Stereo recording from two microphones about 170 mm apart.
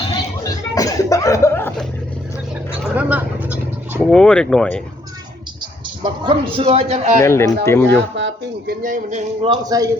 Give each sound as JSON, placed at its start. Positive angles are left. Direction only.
{"t": 0.4, "sound": "music", "side_deg": 20}
{"t": 2.8, "sound": "a sound", "side_deg": -10}
{"t": 4.1, "sound": "speech", "side_deg": 5}
{"t": 6.0, "sound": "speech", "side_deg": -30}
{"t": 7.2, "sound": "speech", "side_deg": 15}
{"t": 8.1, "sound": "speech", "side_deg": -90}
{"t": 8.8, "sound": "a man's voice", "side_deg": -50}
{"t": 9.6, "sound": "a man's voice", "side_deg": -20}